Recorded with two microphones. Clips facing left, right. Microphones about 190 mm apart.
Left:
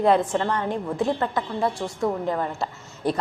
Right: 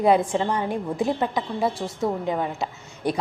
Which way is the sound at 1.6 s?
Centre (ahead or behind).